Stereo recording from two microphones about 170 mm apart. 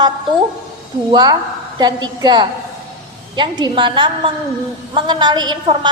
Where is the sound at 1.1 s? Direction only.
25° right (ahead or behind).